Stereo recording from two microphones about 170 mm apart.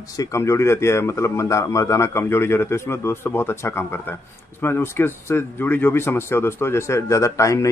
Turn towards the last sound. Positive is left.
turn(degrees=20)  # may be behind; listen again after turning